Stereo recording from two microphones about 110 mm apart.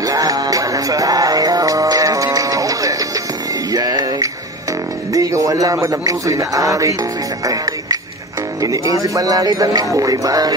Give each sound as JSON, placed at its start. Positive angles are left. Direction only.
{"t": 0.0, "sound": "music", "side_deg": -35}
{"t": 5.1, "sound": "speech", "side_deg": -30}